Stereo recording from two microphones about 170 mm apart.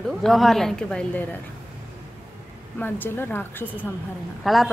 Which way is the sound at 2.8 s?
10° left (ahead or behind).